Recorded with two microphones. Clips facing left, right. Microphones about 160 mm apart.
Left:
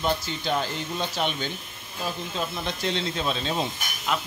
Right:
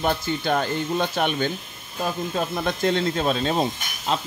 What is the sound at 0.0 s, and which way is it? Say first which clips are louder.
Speech: right 3 dB; 55° right (ahead or behind).